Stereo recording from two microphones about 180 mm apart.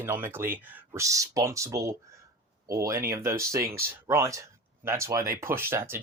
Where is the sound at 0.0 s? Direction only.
10° right (ahead or behind).